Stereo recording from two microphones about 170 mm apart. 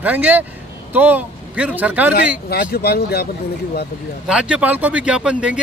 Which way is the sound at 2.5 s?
70° left (ahead or behind).